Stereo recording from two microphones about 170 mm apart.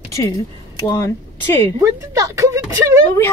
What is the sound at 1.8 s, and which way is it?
A woman's voice, 20° right (ahead or behind).